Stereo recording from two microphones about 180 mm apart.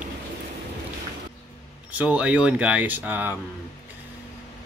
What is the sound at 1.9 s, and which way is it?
Speech, 5° right (ahead or behind).